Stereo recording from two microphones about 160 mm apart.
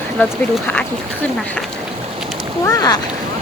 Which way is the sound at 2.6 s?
25° left (ahead or behind).